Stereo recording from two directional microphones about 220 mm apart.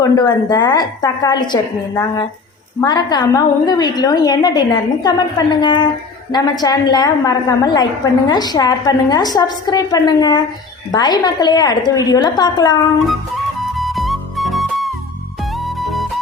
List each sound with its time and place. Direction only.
0.0 s a woman's voice: 20° left (ahead or behind)
2.8 s a woman's voice: 20° left (ahead or behind)
13.1 s music: centre (ahead or behind)